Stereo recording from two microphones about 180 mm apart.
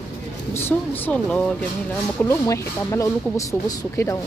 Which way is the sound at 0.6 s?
10° left (ahead or behind).